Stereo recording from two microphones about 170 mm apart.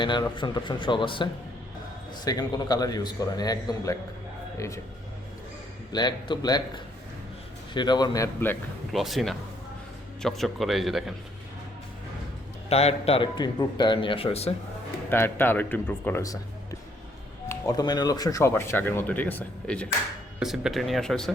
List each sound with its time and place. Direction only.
0.0 s a man's voice: 25° left (ahead or behind)
5.9 s a man's voice: 25° left (ahead or behind)
7.7 s a man's voice: 25° left (ahead or behind)
8.9 s speech: centre (ahead or behind)
12.6 s a man's voice: 35° left (ahead or behind)
15.1 s speech: 10° left (ahead or behind)
17.5 s speech: 20° left (ahead or behind); by 21.3 s 5° left (ahead or behind)